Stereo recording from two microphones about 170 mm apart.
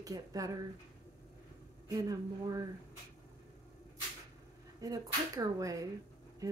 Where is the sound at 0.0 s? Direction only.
20° right (ahead or behind).